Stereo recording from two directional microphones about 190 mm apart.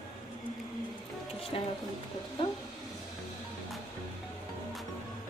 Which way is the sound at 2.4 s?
25° left (ahead or behind).